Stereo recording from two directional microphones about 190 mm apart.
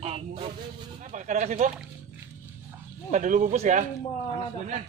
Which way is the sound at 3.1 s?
40° right (ahead or behind).